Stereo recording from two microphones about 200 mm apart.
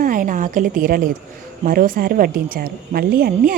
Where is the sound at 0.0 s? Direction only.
40° right (ahead or behind).